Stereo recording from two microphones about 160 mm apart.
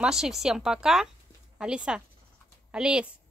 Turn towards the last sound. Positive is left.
turn(degrees=-5)  # may be behind; listen again after turning